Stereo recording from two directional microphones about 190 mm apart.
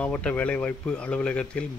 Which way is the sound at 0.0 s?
5° left (ahead or behind).